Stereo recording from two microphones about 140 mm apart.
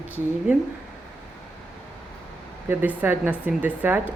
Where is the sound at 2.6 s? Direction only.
15° right (ahead or behind).